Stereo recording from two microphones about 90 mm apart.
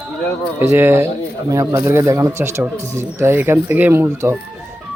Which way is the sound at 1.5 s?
40° right (ahead or behind).